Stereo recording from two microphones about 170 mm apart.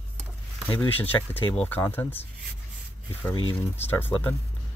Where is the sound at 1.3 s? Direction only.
10° left (ahead or behind).